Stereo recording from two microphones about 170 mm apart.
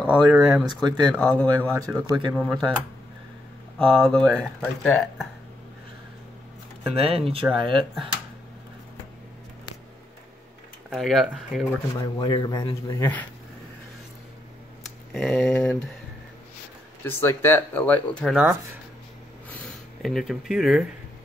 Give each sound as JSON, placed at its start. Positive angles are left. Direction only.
{"t": 0.0, "sound": "speech", "side_deg": -5}
{"t": 1.8, "sound": "speech", "side_deg": -20}
{"t": 2.3, "sound": "speech", "side_deg": 0}
{"t": 7.0, "sound": "speech", "side_deg": -35}
{"t": 10.9, "sound": "speech", "side_deg": 0}
{"t": 11.9, "sound": "speech", "side_deg": 25}
{"t": 15.1, "sound": "speech", "side_deg": 0}
{"t": 17.0, "sound": "speech", "side_deg": 15}
{"t": 18.3, "sound": "speech", "side_deg": -5}
{"t": 19.5, "sound": "a sound", "side_deg": 5}